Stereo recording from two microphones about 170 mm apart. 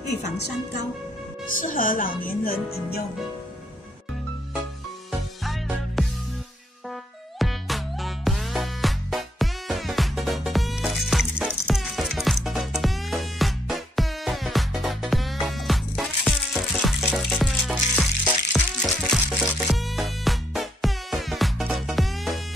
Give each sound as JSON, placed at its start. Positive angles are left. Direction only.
{"t": 1.6, "sound": "speech", "side_deg": 55}
{"t": 5.4, "sound": "music", "side_deg": 0}
{"t": 7.3, "sound": "music", "side_deg": 0}